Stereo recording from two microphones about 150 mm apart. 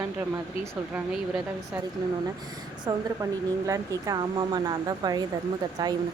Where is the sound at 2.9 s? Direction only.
25° right (ahead or behind).